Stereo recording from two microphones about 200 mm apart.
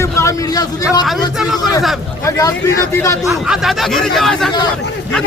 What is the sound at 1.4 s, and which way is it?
Speech, centre (ahead or behind).